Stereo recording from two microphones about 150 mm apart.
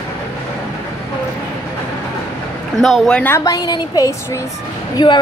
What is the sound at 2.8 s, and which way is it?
Speech, 5° left (ahead or behind).